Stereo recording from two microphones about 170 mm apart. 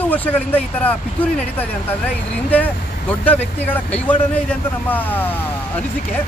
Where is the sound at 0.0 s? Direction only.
10° left (ahead or behind).